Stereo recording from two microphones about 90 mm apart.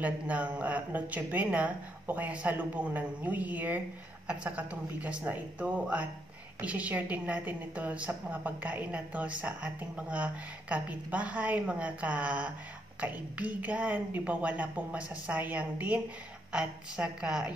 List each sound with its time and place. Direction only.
0.0 s a woman's voice: 15° right (ahead or behind)